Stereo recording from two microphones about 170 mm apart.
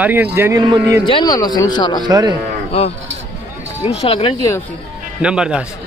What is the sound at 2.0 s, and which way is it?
Speech, 25° right (ahead or behind).